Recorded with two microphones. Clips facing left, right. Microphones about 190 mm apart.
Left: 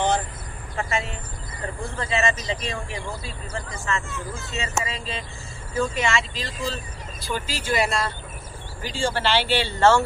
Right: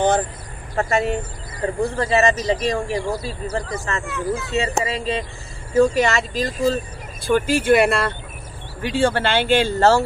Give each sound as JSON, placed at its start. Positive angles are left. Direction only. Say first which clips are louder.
{"t": 0.7, "sound": "speech", "louder": "right 8 dB", "side_deg": -45}
{"t": 4.0, "sound": "speech", "louder": "right 10 dB", "side_deg": -60}
{"t": 4.6, "sound": "speech", "louder": "right 4 dB", "side_deg": -35}
{"t": 7.2, "sound": "speech", "louder": "right 12 dB", "side_deg": -55}